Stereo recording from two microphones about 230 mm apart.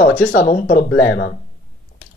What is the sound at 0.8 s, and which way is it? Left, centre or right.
Speech, left.